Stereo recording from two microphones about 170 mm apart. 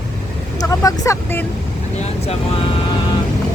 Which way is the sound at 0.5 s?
20° left (ahead or behind).